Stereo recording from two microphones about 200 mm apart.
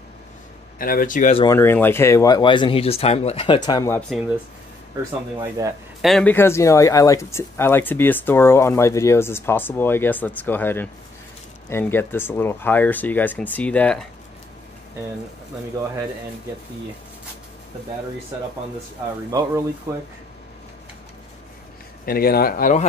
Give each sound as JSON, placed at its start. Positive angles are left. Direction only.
{"t": 0.7, "sound": "speech", "side_deg": 45}
{"t": 1.3, "sound": "speech", "side_deg": 20}
{"t": 1.6, "sound": "speech", "side_deg": 10}
{"t": 5.4, "sound": "a man's voice", "side_deg": -15}
{"t": 5.9, "sound": "speech", "side_deg": 0}
{"t": 19.3, "sound": "a man's voice", "side_deg": -15}
{"t": 22.0, "sound": "speech", "side_deg": 50}